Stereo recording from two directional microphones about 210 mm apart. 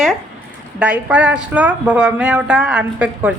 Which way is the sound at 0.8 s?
5° right (ahead or behind).